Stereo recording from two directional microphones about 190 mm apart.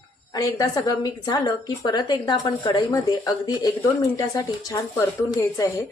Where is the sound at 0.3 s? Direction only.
20° left (ahead or behind).